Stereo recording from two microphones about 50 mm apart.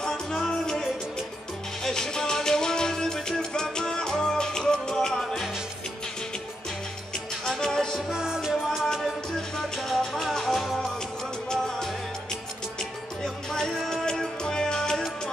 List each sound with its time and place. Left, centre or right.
0.0 s music: centre
1.9 s music: centre
7.4 s music: centre
8.1 s music: centre
8.8 s music: centre
13.2 s music: centre